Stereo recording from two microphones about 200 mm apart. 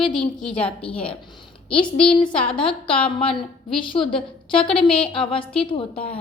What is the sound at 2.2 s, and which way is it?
A woman's voice, 25° left (ahead or behind).